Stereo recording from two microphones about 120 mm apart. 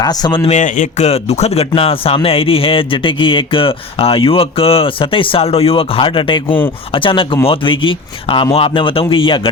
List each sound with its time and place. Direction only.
0.0 s a man's voice: 35° left (ahead or behind)
0.4 s a man's voice: 85° left; by 9.5 s 45° left (ahead or behind)